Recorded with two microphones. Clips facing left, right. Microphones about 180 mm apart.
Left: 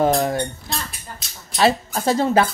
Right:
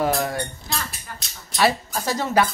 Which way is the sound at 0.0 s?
25° left (ahead or behind).